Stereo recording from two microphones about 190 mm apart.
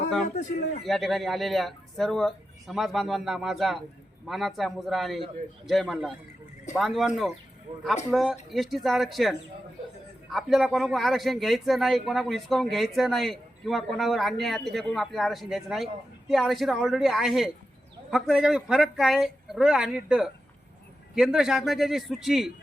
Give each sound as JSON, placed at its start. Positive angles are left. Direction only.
{"t": 0.9, "sound": "a man's voice", "side_deg": 0}
{"t": 8.1, "sound": "a man's voice", "side_deg": 0}